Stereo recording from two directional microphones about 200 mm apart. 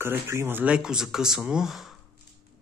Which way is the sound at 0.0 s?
10° right (ahead or behind).